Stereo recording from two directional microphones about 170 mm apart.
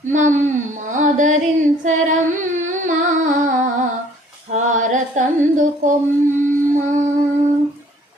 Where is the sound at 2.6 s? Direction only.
45° right (ahead or behind).